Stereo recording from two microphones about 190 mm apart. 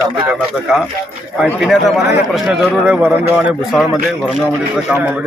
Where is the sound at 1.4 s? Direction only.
Centre (ahead or behind).